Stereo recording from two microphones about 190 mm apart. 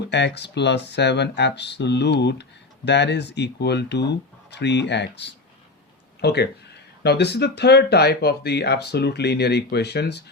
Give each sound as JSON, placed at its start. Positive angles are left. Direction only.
{"t": 0.3, "sound": "speech", "side_deg": 65}